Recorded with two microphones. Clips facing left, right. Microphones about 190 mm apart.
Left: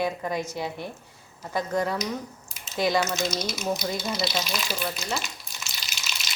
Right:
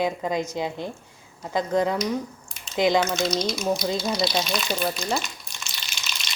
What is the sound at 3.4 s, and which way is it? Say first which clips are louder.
Speech: right 4 dB; 5° left (ahead or behind).